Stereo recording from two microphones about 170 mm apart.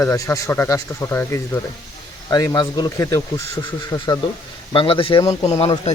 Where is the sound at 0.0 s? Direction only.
20° left (ahead or behind).